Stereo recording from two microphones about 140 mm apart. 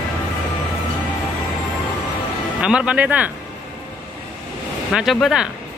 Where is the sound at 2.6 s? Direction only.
5° right (ahead or behind).